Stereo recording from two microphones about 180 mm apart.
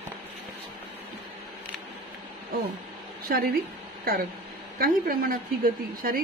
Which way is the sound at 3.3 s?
55° right (ahead or behind).